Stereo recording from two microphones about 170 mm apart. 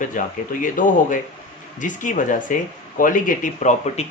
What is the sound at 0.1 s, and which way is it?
Speech, 50° left (ahead or behind).